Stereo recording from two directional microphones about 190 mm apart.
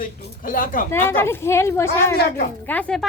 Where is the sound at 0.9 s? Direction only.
10° left (ahead or behind).